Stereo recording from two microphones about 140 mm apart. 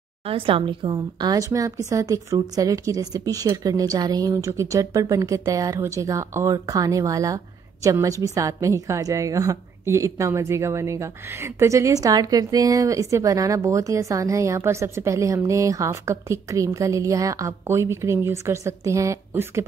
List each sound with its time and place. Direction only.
0.3 s a woman's voice: 40° right (ahead or behind); by 19.6 s 20° right (ahead or behind)